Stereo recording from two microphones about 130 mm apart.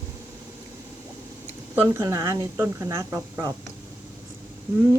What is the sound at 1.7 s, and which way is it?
A woman's voice, 20° right (ahead or behind).